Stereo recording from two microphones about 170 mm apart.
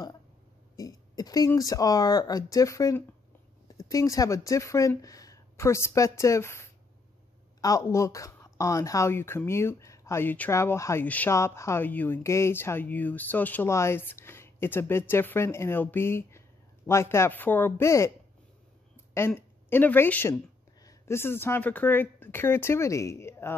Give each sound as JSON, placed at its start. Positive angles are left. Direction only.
{"t": 0.7, "sound": "speech", "side_deg": 20}
{"t": 19.1, "sound": "a woman's voice", "side_deg": 15}